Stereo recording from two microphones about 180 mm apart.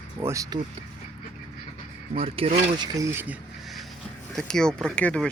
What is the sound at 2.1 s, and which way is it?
Speech, 30° right (ahead or behind).